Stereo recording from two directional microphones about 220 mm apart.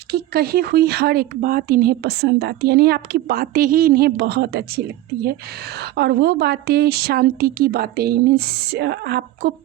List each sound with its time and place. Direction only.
0.1 s speech: 45° right (ahead or behind)
5.8 s speech: 45° right (ahead or behind)